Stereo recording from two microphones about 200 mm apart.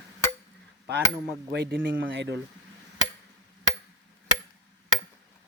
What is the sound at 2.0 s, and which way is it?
Speech, 65° right (ahead or behind).